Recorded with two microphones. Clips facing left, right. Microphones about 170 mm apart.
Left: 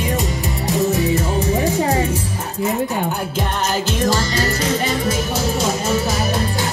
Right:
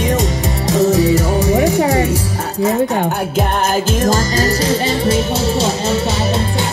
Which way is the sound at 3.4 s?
45° right (ahead or behind).